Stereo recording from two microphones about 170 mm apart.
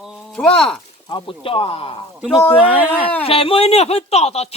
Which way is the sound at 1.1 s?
30° left (ahead or behind).